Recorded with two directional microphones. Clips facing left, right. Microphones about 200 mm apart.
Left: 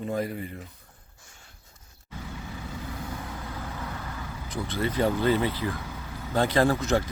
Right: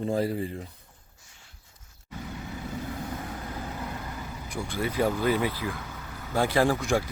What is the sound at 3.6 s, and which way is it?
Vehicle, 15° right (ahead or behind).